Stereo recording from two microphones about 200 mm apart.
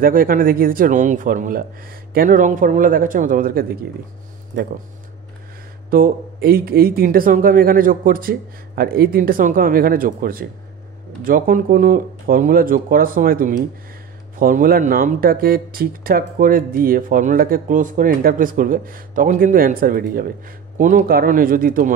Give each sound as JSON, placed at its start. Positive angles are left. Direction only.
{"t": 0.0, "sound": "speech", "side_deg": -45}
{"t": 5.9, "sound": "speech", "side_deg": -45}